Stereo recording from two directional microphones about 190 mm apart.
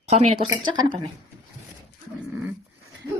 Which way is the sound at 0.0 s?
35° right (ahead or behind).